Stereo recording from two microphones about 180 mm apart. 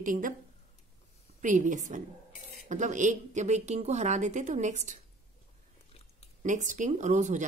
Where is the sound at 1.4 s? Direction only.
45° right (ahead or behind).